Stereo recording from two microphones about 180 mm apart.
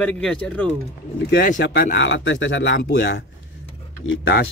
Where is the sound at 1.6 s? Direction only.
65° left (ahead or behind).